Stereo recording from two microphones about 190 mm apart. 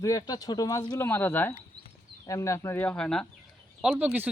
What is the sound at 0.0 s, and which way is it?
Speech, 20° left (ahead or behind).